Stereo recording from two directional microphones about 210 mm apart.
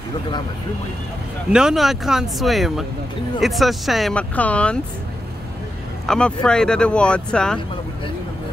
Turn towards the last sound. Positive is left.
turn(degrees=5)  # may be behind; listen again after turning